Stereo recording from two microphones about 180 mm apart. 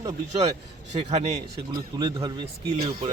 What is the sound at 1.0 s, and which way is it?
Speech, 40° right (ahead or behind).